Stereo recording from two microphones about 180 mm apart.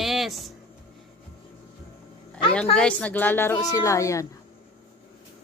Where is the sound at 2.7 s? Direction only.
5° left (ahead or behind).